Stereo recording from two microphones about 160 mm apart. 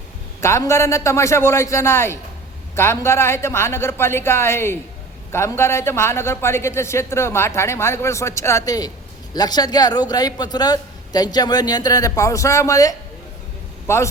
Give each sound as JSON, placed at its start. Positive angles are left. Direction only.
{"t": 0.4, "sound": "a man's voice", "side_deg": 15}